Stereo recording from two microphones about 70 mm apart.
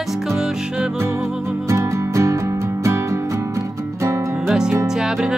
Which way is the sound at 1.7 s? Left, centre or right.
Right.